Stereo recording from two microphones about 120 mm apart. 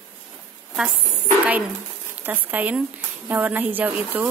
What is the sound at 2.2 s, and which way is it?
A woman's voice, 15° right (ahead or behind).